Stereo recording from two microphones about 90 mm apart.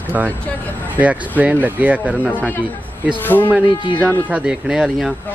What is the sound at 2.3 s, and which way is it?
A man's voice, 20° left (ahead or behind).